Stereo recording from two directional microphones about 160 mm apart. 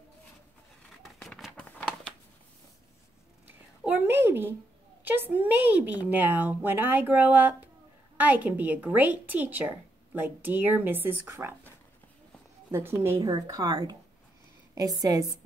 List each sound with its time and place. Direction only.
1.0 s a sound: centre (ahead or behind)
3.8 s a sound: 10° right (ahead or behind)
5.0 s a woman's voice: 10° right (ahead or behind)
12.7 s a woman's voice: 15° right (ahead or behind)
13.2 s speech: 25° right (ahead or behind)
15.0 s speech: 20° right (ahead or behind)